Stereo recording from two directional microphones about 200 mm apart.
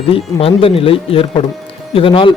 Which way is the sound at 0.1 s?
30° left (ahead or behind).